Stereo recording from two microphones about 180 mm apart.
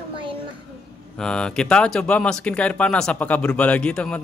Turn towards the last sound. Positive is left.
turn(degrees=5)  # may be behind; listen again after turning